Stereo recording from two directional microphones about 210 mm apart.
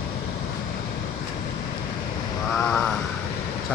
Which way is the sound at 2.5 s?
5° left (ahead or behind).